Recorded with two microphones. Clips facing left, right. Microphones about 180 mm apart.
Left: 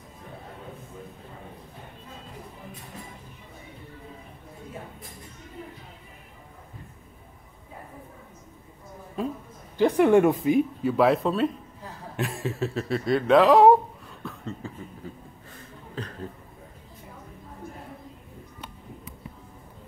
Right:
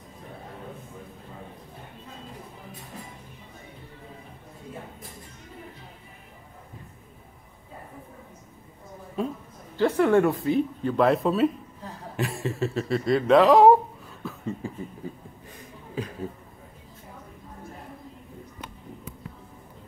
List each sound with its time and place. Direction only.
9.2 s speech: centre (ahead or behind)
9.8 s speech: 15° left (ahead or behind)
10.8 s speech: 5° left (ahead or behind)
14.2 s a sound: 10° right (ahead or behind)